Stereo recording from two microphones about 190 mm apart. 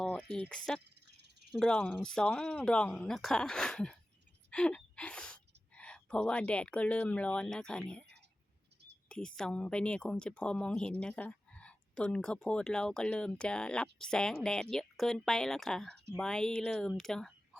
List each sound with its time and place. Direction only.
0.0 s speech: 5° left (ahead or behind)
0.9 s cricket: 60° right (ahead or behind)
1.5 s speech: 5° left (ahead or behind)
9.0 s speech: 5° left (ahead or behind)